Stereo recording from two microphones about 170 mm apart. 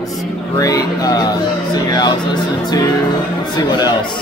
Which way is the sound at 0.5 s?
20° left (ahead or behind).